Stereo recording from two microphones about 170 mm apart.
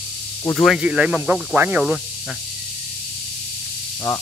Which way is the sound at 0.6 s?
5° right (ahead or behind).